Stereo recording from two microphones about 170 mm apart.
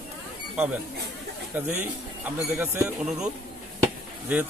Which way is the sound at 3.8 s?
10° right (ahead or behind).